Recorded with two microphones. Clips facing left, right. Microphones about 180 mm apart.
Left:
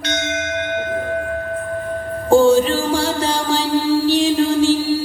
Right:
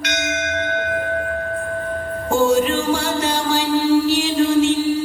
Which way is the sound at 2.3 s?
30° left (ahead or behind).